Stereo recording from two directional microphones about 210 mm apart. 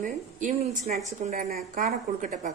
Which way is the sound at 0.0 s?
35° right (ahead or behind).